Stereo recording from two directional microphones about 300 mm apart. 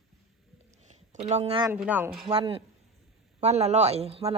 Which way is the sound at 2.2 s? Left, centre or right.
Centre.